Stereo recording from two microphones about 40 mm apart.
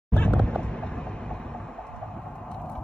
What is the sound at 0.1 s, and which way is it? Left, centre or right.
Music, left.